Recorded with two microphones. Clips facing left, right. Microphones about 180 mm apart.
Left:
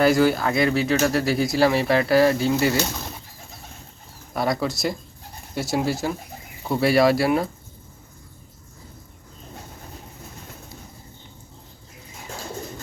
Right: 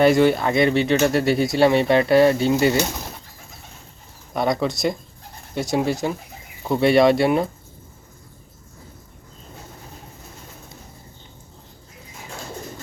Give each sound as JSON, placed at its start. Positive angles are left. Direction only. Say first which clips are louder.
{"t": 0.0, "sound": "speech", "louder": "right 2 dB", "side_deg": 0}
{"t": 4.4, "sound": "speech", "louder": "right 2 dB", "side_deg": 0}